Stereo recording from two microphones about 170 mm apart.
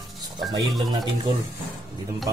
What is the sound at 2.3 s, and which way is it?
Speech, 20° right (ahead or behind).